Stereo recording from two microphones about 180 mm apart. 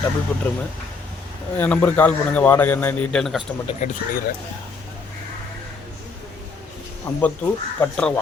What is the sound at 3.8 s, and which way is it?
Speech, 40° left (ahead or behind).